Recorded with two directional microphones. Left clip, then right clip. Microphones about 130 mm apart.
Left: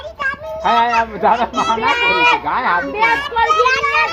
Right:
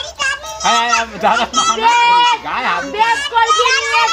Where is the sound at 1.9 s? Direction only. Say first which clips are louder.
Right 4 dB; 45° right (ahead or behind).